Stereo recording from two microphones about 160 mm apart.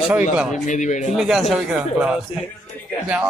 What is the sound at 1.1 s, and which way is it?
Speech, centre (ahead or behind).